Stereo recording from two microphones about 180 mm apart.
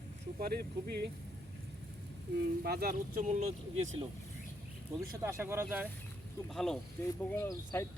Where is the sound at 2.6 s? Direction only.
60° right (ahead or behind); by 3.8 s 40° right (ahead or behind).